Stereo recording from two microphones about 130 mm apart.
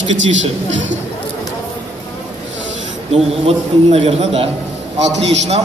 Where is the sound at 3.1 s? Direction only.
55° right (ahead or behind).